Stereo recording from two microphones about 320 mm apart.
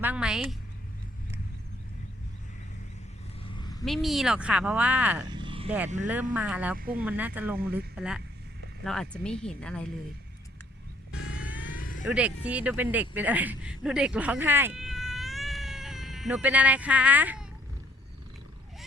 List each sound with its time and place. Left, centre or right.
0.0 s speech: centre
3.8 s speech: centre
6.3 s speech: centre
6.7 s speech: right
7.0 s speech: centre
11.1 s vehicle: left
12.0 s speech: centre